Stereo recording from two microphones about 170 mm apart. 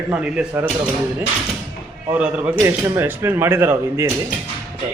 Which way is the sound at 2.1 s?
10° right (ahead or behind).